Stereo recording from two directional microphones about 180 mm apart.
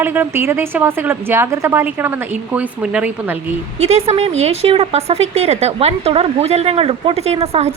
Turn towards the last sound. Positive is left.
turn(degrees=-35)  # may be behind; listen again after turning